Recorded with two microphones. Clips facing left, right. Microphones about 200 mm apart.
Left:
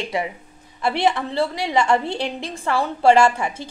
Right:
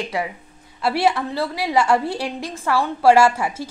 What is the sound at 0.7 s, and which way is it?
A woman's voice, 5° right (ahead or behind).